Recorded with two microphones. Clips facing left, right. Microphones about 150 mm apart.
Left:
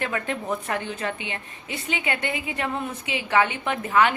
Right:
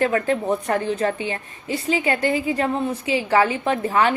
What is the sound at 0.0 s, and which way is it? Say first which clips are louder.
A woman's voice: right 8 dB; 35° right (ahead or behind).